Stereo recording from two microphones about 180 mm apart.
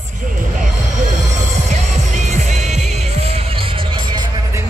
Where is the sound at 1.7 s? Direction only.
40° right (ahead or behind).